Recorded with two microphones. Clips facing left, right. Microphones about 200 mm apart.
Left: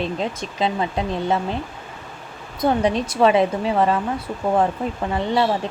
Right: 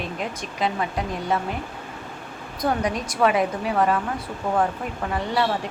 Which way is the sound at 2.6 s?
25° left (ahead or behind).